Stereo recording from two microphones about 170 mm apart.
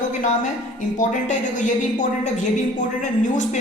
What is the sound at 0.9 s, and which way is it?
A woman's voice, 45° left (ahead or behind).